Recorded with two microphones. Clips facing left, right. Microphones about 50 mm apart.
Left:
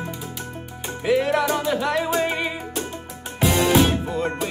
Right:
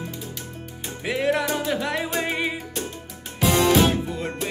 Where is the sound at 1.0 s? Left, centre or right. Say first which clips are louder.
Left 3 dB; centre.